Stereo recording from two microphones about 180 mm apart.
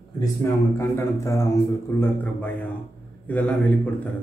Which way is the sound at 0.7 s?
15° left (ahead or behind).